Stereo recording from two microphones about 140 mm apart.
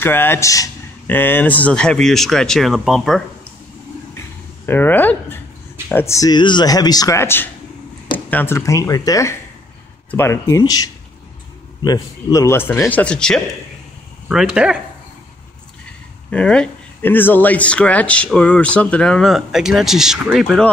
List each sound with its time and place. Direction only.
0.0 s speech: 15° left (ahead or behind); by 3.2 s centre (ahead or behind)
4.6 s speech: 15° left (ahead or behind)
14.3 s speech: 5° right (ahead or behind)
16.3 s speech: 5° left (ahead or behind)